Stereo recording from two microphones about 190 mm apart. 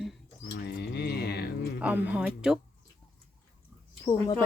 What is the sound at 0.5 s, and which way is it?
Rodents, 60° left (ahead or behind).